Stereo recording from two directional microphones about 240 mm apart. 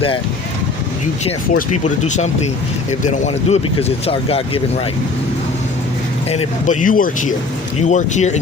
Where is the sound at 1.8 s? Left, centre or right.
Left.